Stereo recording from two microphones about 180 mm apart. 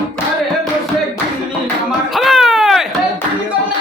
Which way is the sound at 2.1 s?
Centre (ahead or behind).